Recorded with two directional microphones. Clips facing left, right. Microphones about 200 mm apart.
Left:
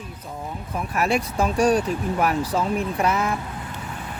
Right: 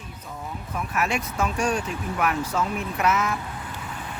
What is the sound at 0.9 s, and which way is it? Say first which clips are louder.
Speech: left 4 dB; 35° left (ahead or behind).